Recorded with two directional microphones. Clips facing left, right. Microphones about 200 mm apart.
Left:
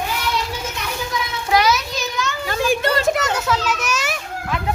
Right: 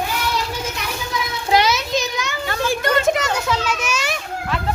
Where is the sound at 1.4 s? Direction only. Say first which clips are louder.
Even; 25° right (ahead or behind).